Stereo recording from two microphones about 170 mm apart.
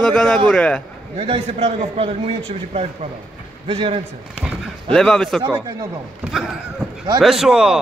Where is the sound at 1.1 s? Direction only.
35° right (ahead or behind).